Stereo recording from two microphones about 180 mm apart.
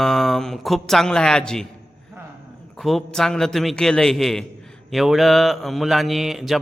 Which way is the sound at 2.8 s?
Centre (ahead or behind).